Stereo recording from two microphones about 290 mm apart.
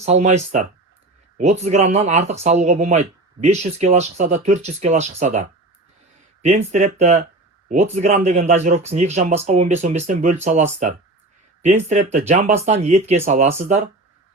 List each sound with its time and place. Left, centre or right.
0.0 s speech: right